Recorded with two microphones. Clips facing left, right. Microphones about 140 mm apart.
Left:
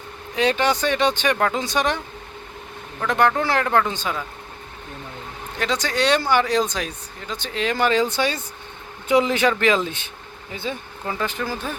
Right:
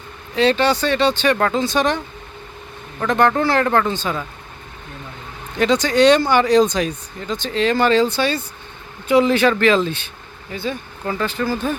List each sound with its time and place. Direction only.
0.3 s speech: 15° left (ahead or behind)
3.1 s speech: 5° left (ahead or behind)
5.5 s speech: centre (ahead or behind); by 10.8 s 20° left (ahead or behind)
11.0 s speech: 5° left (ahead or behind)
11.3 s speech: 15° left (ahead or behind)